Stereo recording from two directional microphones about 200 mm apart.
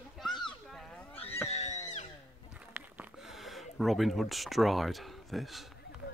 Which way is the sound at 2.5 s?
5° right (ahead or behind).